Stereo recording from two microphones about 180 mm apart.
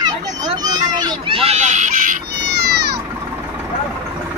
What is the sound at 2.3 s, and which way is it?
Cat, 65° right (ahead or behind).